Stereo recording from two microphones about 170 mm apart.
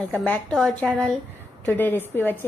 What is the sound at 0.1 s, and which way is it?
A woman's voice, 5° left (ahead or behind).